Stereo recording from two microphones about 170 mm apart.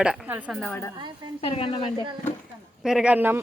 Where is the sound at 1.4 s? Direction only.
35° left (ahead or behind).